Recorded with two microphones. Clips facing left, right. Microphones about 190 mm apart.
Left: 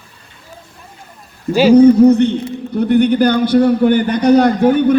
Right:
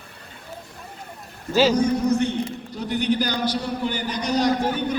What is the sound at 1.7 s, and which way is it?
A man's voice, 60° left (ahead or behind).